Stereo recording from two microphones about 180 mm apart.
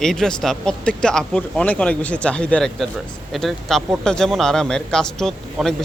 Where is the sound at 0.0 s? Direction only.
5° left (ahead or behind).